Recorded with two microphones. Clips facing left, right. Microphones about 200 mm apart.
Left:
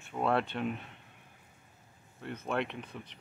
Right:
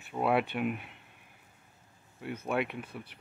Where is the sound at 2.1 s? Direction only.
10° right (ahead or behind).